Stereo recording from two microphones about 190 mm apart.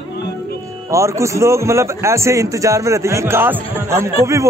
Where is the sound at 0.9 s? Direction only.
15° right (ahead or behind).